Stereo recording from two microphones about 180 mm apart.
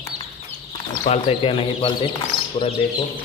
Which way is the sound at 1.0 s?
35° left (ahead or behind).